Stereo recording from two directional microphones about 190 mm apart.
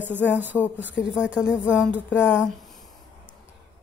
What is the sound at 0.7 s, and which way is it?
Speech, 75° left (ahead or behind).